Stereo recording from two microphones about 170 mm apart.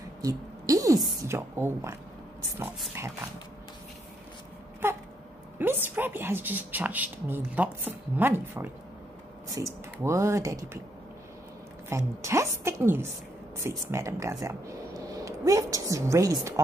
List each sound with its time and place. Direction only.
0.2 s a sound: 20° right (ahead or behind)
1.2 s a woman's voice: 15° right (ahead or behind)
4.8 s a woman's voice: 15° right (ahead or behind)
11.9 s a woman's voice: 15° right (ahead or behind)